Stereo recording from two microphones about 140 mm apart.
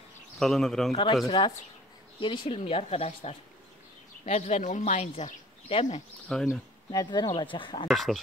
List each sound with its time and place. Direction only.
0.4 s speech: centre (ahead or behind)
0.9 s speech: 35° left (ahead or behind)
6.2 s speech: centre (ahead or behind)
6.9 s speech: 30° left (ahead or behind)
7.9 s speech: centre (ahead or behind)